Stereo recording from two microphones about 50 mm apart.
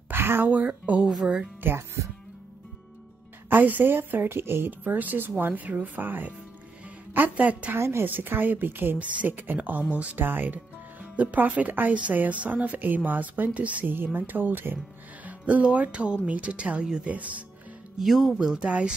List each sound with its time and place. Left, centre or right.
0.1 s a sound: right
0.5 s a woman's voice: right
1.0 s speech: centre
1.6 s speech: right
3.4 s a woman's voice: right
4.6 s a woman's voice: right
7.7 s a woman's voice: right
8.0 s a woman's voice: right
8.9 s a woman's voice: right
10.2 s a woman's voice: right
13.8 s a woman's voice: right
15.2 s speech: right
17.9 s speech: centre
18.7 s speech: right